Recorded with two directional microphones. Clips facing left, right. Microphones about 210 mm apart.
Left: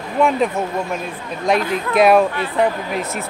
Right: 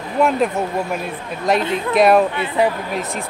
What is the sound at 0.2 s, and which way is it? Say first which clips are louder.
Speech: even; 5° right (ahead or behind).